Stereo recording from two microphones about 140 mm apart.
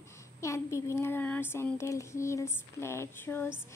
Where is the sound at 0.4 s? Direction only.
20° left (ahead or behind).